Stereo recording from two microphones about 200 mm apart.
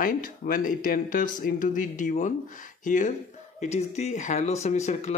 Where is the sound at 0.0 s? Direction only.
45° left (ahead or behind).